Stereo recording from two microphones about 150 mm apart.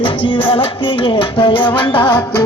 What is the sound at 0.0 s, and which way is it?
Music, 35° left (ahead or behind).